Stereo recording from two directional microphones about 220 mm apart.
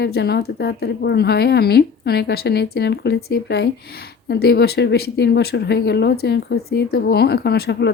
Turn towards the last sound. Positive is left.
turn(degrees=50)  # may be behind; listen again after turning